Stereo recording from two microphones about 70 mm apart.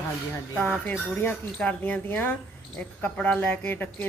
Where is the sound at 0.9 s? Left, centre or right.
Left.